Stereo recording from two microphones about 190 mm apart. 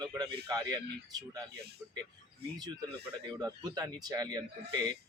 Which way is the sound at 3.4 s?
20° right (ahead or behind).